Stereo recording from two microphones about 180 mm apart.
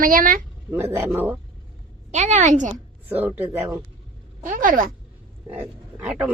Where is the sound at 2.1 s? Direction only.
40° right (ahead or behind).